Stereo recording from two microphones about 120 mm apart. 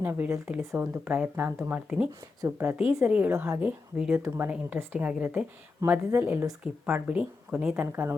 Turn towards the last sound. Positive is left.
turn(degrees=-10)  # may be behind; listen again after turning